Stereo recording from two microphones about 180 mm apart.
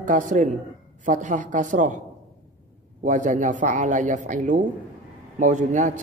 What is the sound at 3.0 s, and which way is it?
Speech, 45° right (ahead or behind).